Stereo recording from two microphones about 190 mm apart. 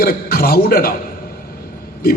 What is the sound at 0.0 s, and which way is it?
Speech, 50° left (ahead or behind).